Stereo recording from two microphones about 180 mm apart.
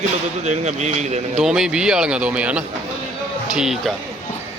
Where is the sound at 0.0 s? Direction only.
40° right (ahead or behind).